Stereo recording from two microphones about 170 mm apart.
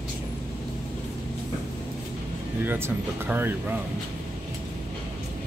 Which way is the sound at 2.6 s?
15° right (ahead or behind).